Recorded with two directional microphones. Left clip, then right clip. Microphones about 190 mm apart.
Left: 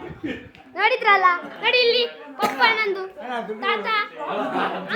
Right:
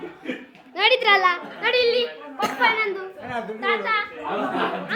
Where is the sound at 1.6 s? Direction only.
Centre (ahead or behind).